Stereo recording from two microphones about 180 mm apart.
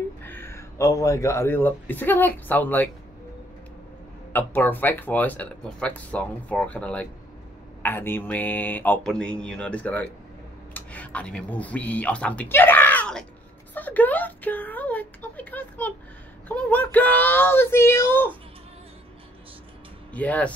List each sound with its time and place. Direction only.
0.2 s speech: 10° left (ahead or behind)
4.3 s speech: 10° left (ahead or behind)
20.1 s speech: 10° left (ahead or behind)